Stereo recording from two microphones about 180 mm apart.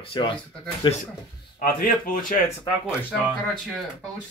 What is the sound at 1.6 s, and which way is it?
Speech, 50° left (ahead or behind).